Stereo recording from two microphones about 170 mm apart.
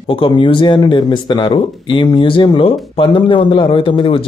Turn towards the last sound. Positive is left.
turn(degrees=30)  # may be behind; listen again after turning